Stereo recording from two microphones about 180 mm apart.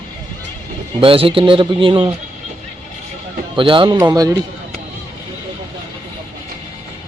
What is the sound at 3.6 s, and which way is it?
Speech, 30° right (ahead or behind).